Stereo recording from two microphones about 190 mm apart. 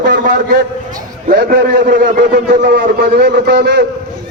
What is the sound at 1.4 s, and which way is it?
A man's voice, 50° right (ahead or behind).